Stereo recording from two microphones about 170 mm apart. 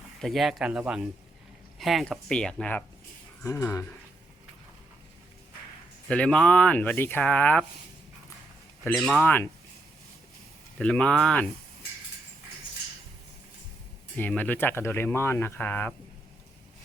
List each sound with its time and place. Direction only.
0.2 s speech: centre (ahead or behind)
3.4 s speech: 20° left (ahead or behind)
6.1 s speech: 5° left (ahead or behind)
8.8 s speech: 5° left (ahead or behind)
10.8 s speech: 5° left (ahead or behind)
14.2 s speech: 10° left (ahead or behind)